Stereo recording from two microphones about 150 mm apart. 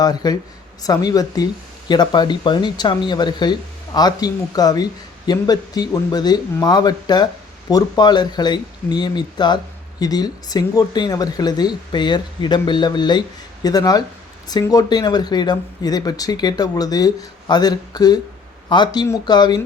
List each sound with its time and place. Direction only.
0.0 s speech: 25° left (ahead or behind)